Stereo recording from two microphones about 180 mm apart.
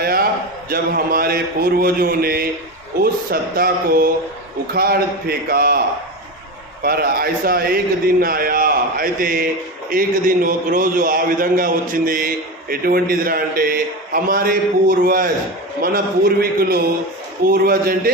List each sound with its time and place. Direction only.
0.0 s a sound: 55° right (ahead or behind)
0.7 s a man's voice: 55° right (ahead or behind)
6.8 s a man's voice: 55° right (ahead or behind)
16.4 s a man's voice: 55° right (ahead or behind)